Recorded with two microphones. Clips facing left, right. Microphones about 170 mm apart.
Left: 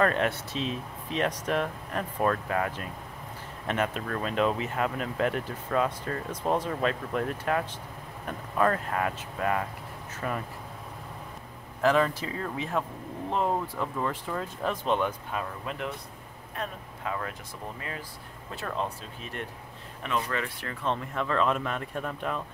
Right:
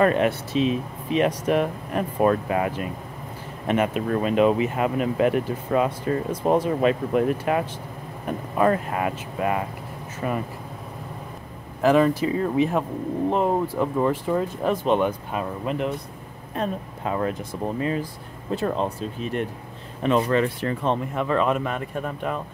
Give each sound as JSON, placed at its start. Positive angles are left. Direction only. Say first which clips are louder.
{"t": 0.0, "sound": "speech", "louder": "right 6 dB", "side_deg": -10}
{"t": 11.8, "sound": "speech", "louder": "right 6 dB", "side_deg": -10}